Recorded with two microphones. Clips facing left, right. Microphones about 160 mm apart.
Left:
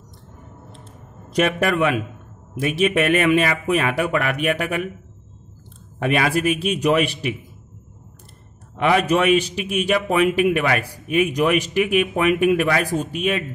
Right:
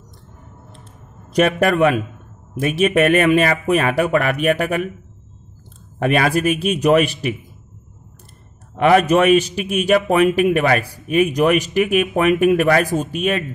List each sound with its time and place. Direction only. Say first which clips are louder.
1.3 s a man's voice: right 4 dB; 40° right (ahead or behind)
5.9 s a man's voice: right 3 dB; 45° right (ahead or behind)
8.7 s a man's voice: right 4 dB; 45° right (ahead or behind)